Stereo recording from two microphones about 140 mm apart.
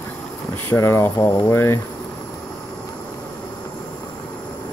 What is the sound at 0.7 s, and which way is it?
Speech, 20° left (ahead or behind).